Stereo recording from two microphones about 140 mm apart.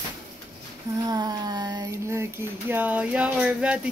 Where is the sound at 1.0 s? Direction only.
25° right (ahead or behind); by 3.9 s 10° right (ahead or behind).